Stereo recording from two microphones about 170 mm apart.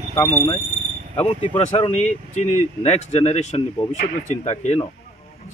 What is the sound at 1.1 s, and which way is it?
Speech, 35° left (ahead or behind).